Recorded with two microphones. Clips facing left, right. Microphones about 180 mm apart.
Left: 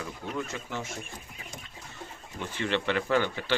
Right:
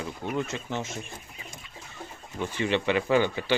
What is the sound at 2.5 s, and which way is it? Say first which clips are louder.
Speech: right 3 dB; 15° right (ahead or behind).